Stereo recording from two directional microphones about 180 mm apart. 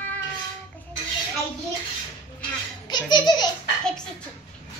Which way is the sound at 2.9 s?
25° left (ahead or behind).